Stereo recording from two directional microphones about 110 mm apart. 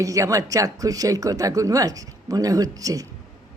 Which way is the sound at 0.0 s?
30° right (ahead or behind).